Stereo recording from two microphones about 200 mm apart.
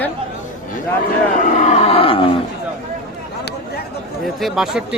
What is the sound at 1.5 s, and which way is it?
Wild animals, 35° left (ahead or behind).